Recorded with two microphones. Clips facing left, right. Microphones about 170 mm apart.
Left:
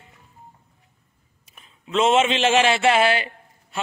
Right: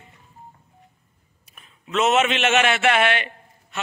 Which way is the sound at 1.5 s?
30° left (ahead or behind).